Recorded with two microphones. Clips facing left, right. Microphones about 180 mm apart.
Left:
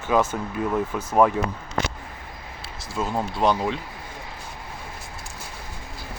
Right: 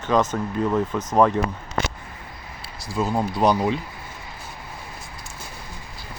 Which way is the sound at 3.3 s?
40° right (ahead or behind).